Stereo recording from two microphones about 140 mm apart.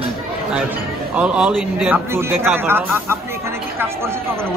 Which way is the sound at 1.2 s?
5° right (ahead or behind).